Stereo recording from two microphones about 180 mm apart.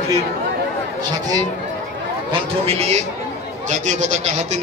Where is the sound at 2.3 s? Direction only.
35° right (ahead or behind).